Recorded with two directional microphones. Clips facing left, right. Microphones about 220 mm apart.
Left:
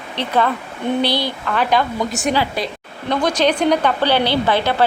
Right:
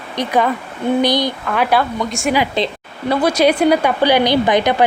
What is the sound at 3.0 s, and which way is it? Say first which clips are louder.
Speech: right 3 dB; 5° right (ahead or behind).